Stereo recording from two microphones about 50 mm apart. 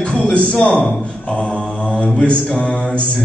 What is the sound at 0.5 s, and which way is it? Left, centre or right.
Speech, centre.